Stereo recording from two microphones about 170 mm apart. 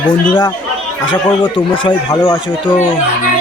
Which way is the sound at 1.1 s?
30° left (ahead or behind).